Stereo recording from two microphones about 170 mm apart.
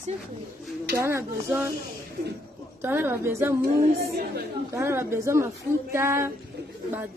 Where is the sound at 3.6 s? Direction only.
65° right (ahead or behind).